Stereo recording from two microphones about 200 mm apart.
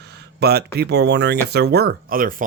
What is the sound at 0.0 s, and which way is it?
Speech, 55° right (ahead or behind).